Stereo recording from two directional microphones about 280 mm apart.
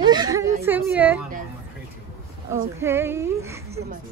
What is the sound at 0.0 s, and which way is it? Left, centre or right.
Speech, centre.